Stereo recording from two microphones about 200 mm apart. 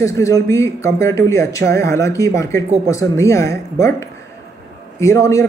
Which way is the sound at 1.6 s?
50° right (ahead or behind).